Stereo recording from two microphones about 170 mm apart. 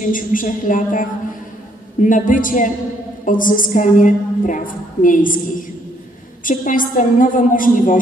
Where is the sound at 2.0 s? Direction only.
50° left (ahead or behind).